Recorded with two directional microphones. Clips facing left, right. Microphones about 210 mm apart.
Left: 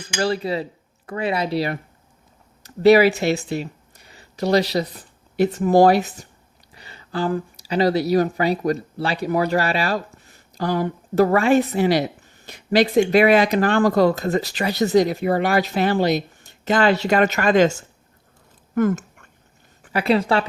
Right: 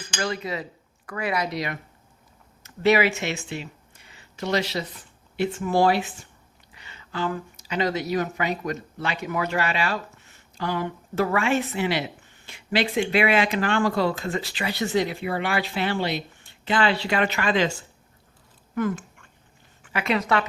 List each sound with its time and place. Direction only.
0.2 s speech: 35° left (ahead or behind)
18.7 s a sound: 45° left (ahead or behind)
19.8 s a woman's voice: 35° left (ahead or behind)